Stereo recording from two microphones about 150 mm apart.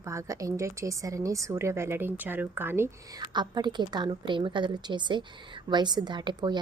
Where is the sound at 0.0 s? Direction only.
20° right (ahead or behind).